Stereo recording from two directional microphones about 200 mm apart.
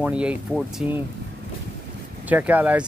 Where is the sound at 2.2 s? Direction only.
10° right (ahead or behind).